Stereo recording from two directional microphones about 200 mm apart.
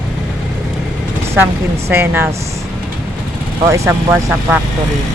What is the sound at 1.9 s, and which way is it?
Speech, 10° right (ahead or behind).